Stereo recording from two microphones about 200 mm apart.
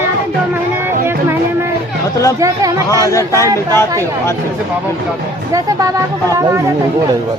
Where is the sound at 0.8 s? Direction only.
10° right (ahead or behind).